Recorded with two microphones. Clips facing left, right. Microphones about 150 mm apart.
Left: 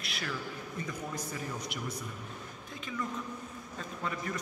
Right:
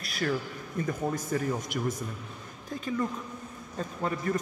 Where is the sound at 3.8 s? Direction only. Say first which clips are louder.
Right 7 dB; 40° right (ahead or behind).